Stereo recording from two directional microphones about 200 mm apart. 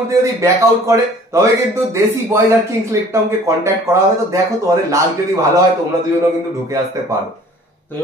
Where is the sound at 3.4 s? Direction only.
15° right (ahead or behind).